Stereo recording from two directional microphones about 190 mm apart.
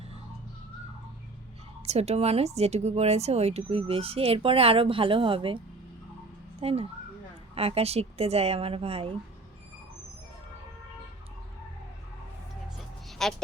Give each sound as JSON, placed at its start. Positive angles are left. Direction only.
{"t": 1.9, "sound": "speech", "side_deg": -35}
{"t": 13.1, "sound": "dog", "side_deg": 0}